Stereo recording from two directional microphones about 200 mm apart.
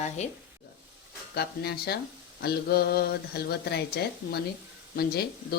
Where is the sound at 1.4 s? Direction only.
50° left (ahead or behind).